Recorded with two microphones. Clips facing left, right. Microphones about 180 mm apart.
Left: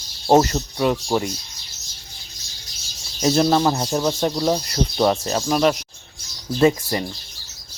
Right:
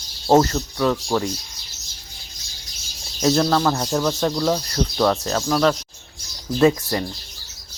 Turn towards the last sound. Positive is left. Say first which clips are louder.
# even
turn(degrees=5)  # may be behind; listen again after turning